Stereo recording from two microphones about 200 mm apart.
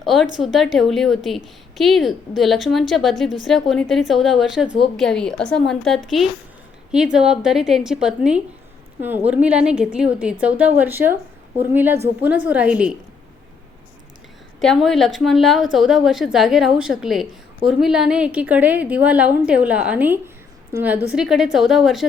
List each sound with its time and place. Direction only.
0.0 s a woman's voice: centre (ahead or behind)
14.6 s a woman's voice: centre (ahead or behind)